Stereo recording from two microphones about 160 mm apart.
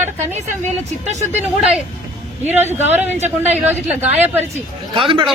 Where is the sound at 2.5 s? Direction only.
15° right (ahead or behind).